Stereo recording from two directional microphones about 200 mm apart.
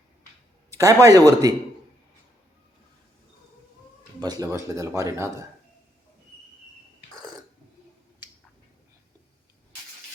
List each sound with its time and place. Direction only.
0.8 s speech: 15° right (ahead or behind)
4.2 s speech: 20° right (ahead or behind)